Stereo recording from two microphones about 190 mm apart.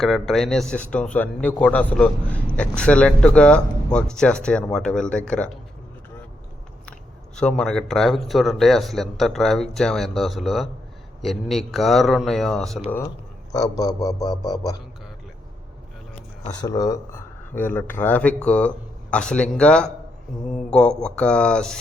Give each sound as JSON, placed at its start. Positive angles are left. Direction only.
{"t": 0.0, "sound": "a man's voice", "side_deg": 0}
{"t": 7.3, "sound": "a man's voice", "side_deg": 5}
{"t": 13.5, "sound": "a man's voice", "side_deg": 20}
{"t": 16.6, "sound": "a man's voice", "side_deg": 20}